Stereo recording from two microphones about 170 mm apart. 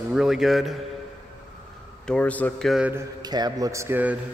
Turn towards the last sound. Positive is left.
turn(degrees=-10)  # may be behind; listen again after turning